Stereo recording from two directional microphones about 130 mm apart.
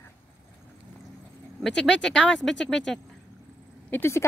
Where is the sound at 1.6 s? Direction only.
5° left (ahead or behind).